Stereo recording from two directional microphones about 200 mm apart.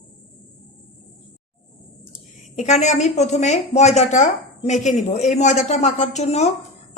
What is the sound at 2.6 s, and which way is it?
A woman's voice, 35° left (ahead or behind).